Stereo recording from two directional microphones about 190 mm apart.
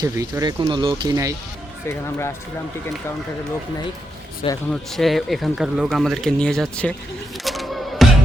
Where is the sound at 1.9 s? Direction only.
15° left (ahead or behind).